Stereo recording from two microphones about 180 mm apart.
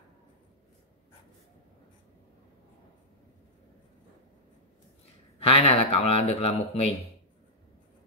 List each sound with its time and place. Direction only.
5.5 s speech: 35° left (ahead or behind)